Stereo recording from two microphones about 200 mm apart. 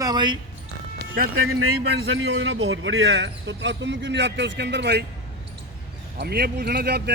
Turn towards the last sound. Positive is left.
turn(degrees=-55)  # may be behind; listen again after turning